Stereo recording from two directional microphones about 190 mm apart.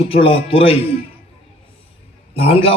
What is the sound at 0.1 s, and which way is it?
Speech, 30° left (ahead or behind).